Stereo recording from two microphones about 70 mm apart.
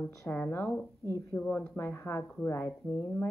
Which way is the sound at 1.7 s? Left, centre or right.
Left.